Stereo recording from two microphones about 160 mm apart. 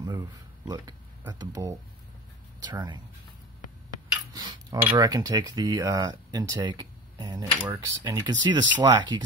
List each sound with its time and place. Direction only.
0.0 s speech: 25° right (ahead or behind)
4.3 s cutlery: 30° right (ahead or behind)
4.9 s speech: 25° right (ahead or behind)